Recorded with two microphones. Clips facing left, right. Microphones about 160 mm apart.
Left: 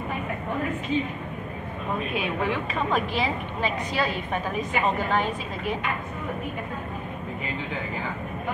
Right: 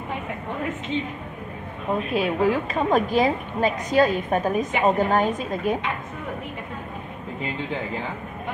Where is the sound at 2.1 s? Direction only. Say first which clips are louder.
Right 7 dB; 40° right (ahead or behind).